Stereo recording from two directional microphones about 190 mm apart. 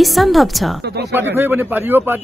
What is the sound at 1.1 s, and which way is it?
A man's voice, 10° right (ahead or behind).